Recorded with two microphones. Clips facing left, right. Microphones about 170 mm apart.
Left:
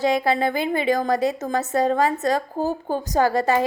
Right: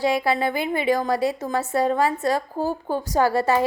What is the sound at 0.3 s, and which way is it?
A woman's voice, 45° left (ahead or behind).